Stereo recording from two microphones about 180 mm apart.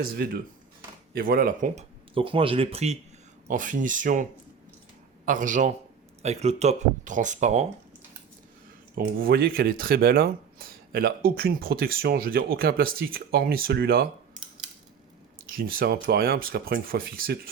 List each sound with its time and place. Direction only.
0.2 s speech: 60° right (ahead or behind)
2.1 s speech: 30° right (ahead or behind)
3.5 s speech: 45° right (ahead or behind)
9.0 s speech: 55° right (ahead or behind)
15.4 s speech: 55° right (ahead or behind)